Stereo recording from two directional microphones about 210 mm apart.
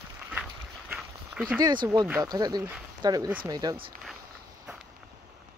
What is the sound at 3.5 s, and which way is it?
Speech, 20° right (ahead or behind).